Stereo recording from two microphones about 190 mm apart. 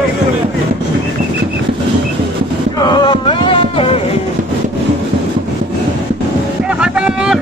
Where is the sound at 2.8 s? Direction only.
25° left (ahead or behind).